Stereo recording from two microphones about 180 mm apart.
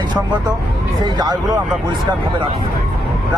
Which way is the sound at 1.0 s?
25° right (ahead or behind).